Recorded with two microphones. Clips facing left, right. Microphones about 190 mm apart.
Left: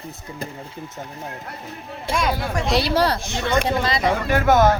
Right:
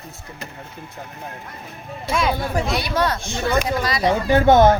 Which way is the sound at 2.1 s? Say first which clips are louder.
Right 1 dB; centre (ahead or behind).